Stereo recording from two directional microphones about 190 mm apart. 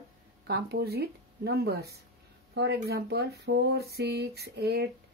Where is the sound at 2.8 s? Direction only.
60° right (ahead or behind).